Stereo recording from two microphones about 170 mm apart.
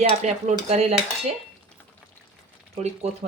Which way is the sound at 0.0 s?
40° right (ahead or behind).